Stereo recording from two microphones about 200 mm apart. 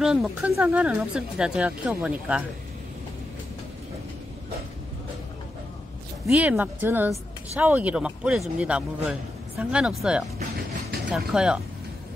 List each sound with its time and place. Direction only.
0.0 s a woman's voice: 5° right (ahead or behind)
6.2 s a woman's voice: 10° right (ahead or behind)